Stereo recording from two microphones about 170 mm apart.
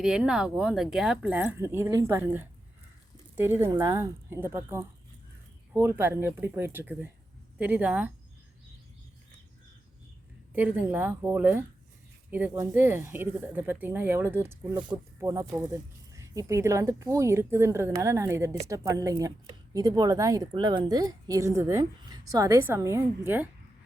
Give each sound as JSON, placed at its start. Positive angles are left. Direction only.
{"t": 0.0, "sound": "speech", "side_deg": -5}
{"t": 10.5, "sound": "a woman's voice", "side_deg": -10}